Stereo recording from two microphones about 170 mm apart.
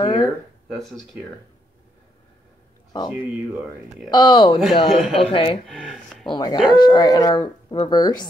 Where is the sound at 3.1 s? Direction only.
5° right (ahead or behind).